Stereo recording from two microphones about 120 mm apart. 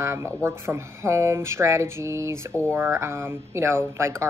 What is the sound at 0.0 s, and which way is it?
Speech, 20° right (ahead or behind).